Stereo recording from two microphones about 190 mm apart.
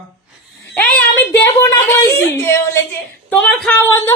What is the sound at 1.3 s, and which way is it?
A woman's voice, 15° left (ahead or behind).